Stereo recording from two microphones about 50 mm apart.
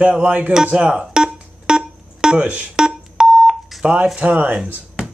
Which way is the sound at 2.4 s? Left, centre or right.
Right.